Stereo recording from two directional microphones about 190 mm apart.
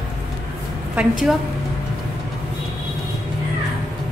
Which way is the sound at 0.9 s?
5° right (ahead or behind).